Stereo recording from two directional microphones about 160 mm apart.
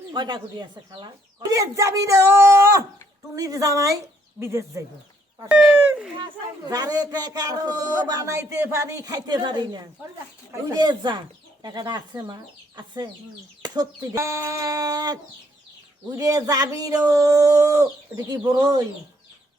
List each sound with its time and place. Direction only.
0.1 s speech: 30° right (ahead or behind)
1.5 s a man's voice: 20° right (ahead or behind)
6.7 s a man's voice: 20° right (ahead or behind)